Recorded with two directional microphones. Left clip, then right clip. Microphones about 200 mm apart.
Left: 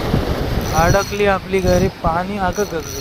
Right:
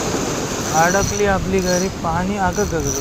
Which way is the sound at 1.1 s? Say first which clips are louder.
Left 1 dB; 20° left (ahead or behind).